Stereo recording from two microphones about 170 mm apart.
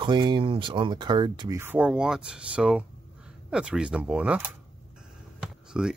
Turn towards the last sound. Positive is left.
turn(degrees=-5)  # may be behind; listen again after turning